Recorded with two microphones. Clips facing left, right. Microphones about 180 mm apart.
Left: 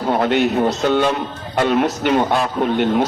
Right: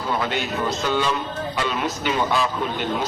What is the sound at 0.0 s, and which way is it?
Speech, 55° left (ahead or behind).